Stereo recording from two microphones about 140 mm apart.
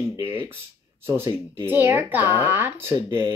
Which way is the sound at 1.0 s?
20° right (ahead or behind).